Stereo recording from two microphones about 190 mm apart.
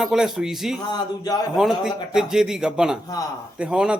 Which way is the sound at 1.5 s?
Centre (ahead or behind).